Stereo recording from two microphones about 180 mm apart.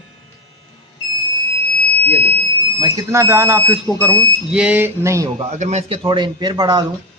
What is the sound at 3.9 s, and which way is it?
Speech, 10° left (ahead or behind).